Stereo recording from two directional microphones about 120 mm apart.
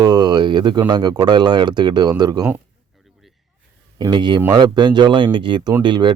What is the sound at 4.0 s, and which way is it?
Speech, 35° right (ahead or behind).